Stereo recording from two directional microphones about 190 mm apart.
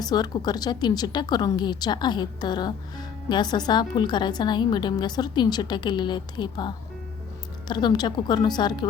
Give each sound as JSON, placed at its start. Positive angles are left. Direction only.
{"t": 0.0, "sound": "a woman's voice", "side_deg": 20}